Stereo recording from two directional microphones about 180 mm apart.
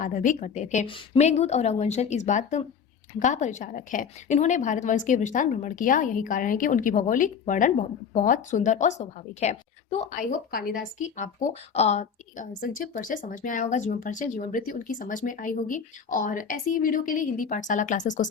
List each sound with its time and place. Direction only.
0.0 s a woman's voice: 45° left (ahead or behind)